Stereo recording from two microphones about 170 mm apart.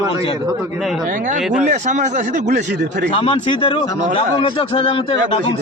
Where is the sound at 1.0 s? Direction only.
50° right (ahead or behind).